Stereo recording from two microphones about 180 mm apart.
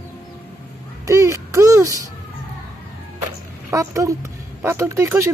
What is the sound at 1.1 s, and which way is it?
Speech, 15° right (ahead or behind).